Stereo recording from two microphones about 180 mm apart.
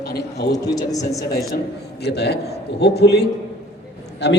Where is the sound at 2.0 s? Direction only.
65° left (ahead or behind).